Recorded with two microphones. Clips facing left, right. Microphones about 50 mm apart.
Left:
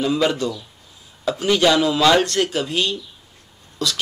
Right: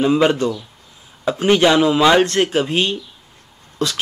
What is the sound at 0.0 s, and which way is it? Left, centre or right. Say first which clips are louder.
A man's voice: right 4 dB; right.